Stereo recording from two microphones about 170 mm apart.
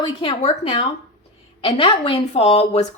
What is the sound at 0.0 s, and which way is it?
A woman's voice, 30° left (ahead or behind).